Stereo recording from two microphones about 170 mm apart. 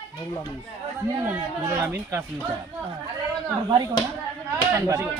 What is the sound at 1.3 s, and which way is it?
Speech, 15° right (ahead or behind).